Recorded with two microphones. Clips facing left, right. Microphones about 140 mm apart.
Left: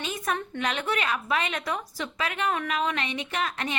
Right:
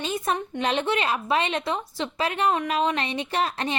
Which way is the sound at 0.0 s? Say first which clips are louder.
Right 4 dB; 30° right (ahead or behind).